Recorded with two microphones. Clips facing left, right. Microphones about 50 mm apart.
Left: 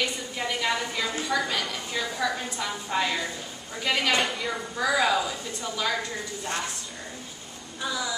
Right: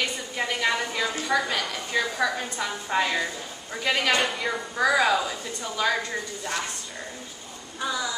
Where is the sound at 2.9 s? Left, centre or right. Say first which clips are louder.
Right 3 dB; centre.